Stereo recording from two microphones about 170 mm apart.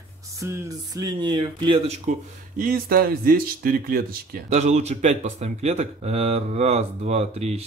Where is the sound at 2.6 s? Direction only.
60° right (ahead or behind).